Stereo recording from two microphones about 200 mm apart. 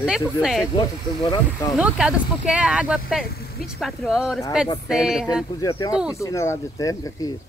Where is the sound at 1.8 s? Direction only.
5° right (ahead or behind).